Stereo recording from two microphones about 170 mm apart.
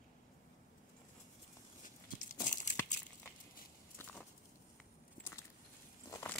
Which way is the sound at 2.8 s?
15° left (ahead or behind).